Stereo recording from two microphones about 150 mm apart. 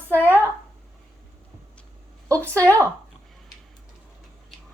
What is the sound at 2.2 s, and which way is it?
Speech, 20° right (ahead or behind).